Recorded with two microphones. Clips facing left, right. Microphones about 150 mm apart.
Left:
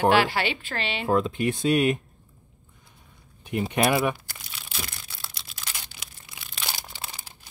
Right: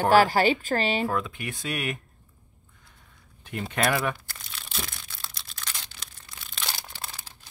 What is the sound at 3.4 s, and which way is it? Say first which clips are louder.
Speech: left 3 dB; 15° left (ahead or behind).